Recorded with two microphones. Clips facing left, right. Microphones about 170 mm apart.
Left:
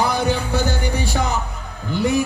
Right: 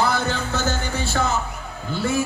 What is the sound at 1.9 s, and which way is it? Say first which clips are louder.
Speech: left 4 dB; 15° left (ahead or behind).